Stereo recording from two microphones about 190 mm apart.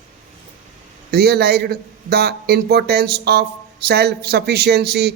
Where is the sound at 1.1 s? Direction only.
55° right (ahead or behind).